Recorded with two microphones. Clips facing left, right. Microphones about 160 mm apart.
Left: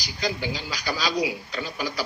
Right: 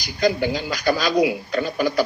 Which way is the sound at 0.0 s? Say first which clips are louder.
Right 9 dB; 50° right (ahead or behind).